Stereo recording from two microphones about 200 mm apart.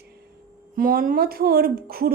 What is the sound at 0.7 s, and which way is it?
A woman's voice, 45° right (ahead or behind).